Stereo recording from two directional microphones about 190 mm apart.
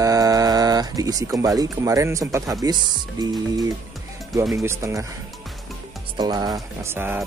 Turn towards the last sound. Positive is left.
turn(degrees=-10)  # may be behind; listen again after turning